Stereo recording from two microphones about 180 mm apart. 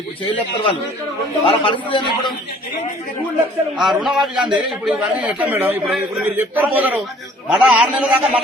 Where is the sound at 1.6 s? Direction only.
25° left (ahead or behind).